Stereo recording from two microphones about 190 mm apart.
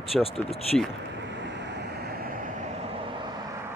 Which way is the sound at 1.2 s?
70° right (ahead or behind).